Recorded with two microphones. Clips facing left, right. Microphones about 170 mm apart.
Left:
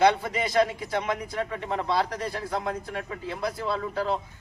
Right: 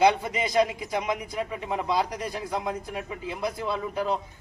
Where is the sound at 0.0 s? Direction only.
20° right (ahead or behind).